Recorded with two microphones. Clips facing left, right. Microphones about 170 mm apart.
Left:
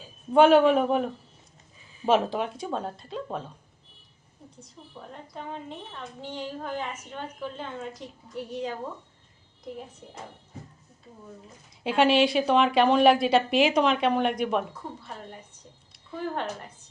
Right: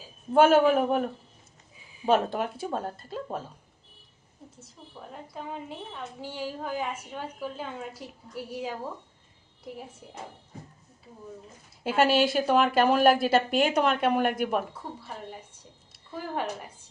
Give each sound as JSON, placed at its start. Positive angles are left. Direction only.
{"t": 0.3, "sound": "a woman's voice", "side_deg": 0}
{"t": 4.6, "sound": "a woman's voice", "side_deg": -5}
{"t": 11.8, "sound": "a woman's voice", "side_deg": 0}